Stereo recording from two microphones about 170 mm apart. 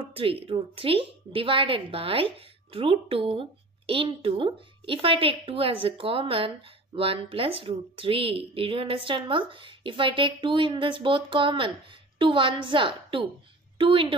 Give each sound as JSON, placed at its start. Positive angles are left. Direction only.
{"t": 0.1, "sound": "a woman's voice", "side_deg": -35}